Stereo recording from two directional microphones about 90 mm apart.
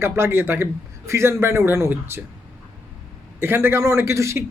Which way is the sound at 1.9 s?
20° right (ahead or behind).